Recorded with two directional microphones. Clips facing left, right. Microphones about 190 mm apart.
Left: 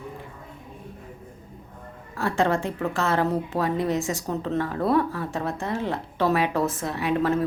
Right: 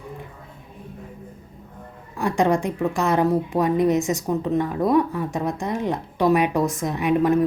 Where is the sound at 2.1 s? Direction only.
15° right (ahead or behind).